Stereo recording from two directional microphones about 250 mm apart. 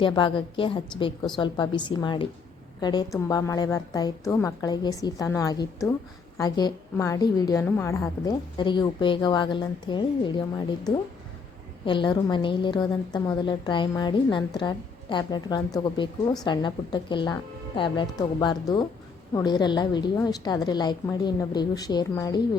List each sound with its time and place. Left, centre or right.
0.0 s a woman's voice: centre